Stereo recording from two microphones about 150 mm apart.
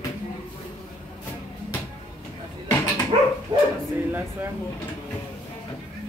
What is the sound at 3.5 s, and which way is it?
Dog, 20° right (ahead or behind).